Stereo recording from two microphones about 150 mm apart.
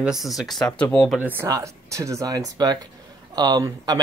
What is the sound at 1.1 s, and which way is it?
Speech, 10° right (ahead or behind).